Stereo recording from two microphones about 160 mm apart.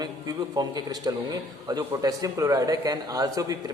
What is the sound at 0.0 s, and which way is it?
A man's voice, 25° right (ahead or behind).